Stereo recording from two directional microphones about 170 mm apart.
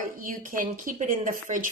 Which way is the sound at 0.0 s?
50° right (ahead or behind).